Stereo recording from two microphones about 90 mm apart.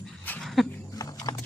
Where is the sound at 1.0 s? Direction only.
45° left (ahead or behind).